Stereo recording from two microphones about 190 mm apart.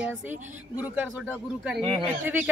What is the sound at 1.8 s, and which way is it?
Speech, 25° right (ahead or behind).